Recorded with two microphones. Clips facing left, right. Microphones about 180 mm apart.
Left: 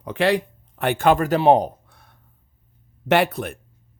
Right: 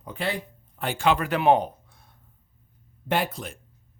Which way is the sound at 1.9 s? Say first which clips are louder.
Left 3 dB; 70° left (ahead or behind).